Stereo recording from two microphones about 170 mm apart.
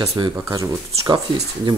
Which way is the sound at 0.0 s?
20° right (ahead or behind).